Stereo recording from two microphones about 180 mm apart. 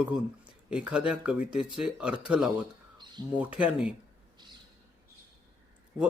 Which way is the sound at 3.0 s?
25° right (ahead or behind).